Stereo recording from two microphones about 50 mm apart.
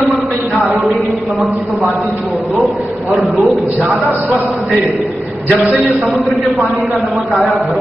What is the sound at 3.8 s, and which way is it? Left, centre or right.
Speech, right.